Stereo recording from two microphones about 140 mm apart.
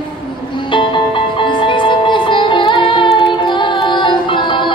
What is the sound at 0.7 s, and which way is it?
Music, 35° left (ahead or behind).